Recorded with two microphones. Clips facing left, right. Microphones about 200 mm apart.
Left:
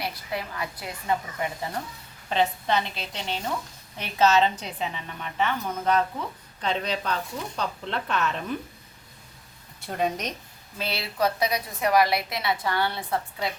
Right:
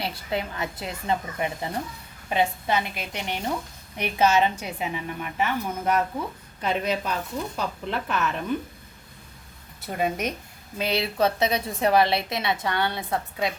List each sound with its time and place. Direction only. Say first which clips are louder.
0.0 s a woman's voice: right 3 dB; 25° right (ahead or behind)
2.3 s a woman's voice: even; 10° right (ahead or behind)
9.8 s a woman's voice: right 1 dB; 5° right (ahead or behind)
10.8 s a woman's voice: right 4 dB; 20° right (ahead or behind)